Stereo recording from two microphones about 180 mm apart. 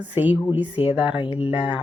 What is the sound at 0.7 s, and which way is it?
Speech, 30° left (ahead or behind).